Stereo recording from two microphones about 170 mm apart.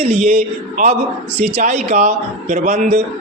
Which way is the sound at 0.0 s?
40° right (ahead or behind).